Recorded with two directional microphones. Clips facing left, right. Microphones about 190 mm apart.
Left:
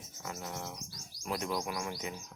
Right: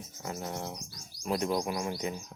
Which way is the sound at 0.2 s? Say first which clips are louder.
Right 4 dB; 30° right (ahead or behind).